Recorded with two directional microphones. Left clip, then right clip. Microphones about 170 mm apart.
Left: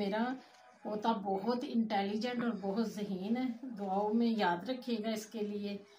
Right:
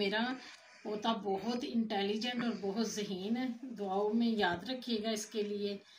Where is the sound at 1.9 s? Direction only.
15° left (ahead or behind).